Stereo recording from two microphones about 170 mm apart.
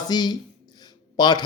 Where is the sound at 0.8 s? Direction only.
25° left (ahead or behind).